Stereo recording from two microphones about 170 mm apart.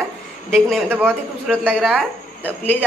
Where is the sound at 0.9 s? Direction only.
15° right (ahead or behind).